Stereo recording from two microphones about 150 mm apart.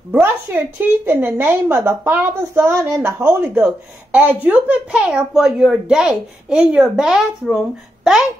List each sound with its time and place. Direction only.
0.1 s a woman's voice: 10° right (ahead or behind)